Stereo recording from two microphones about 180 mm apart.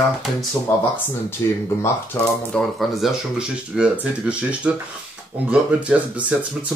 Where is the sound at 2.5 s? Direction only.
Centre (ahead or behind).